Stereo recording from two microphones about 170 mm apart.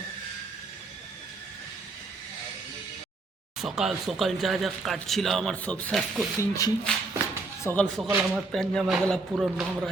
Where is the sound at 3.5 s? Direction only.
Centre (ahead or behind).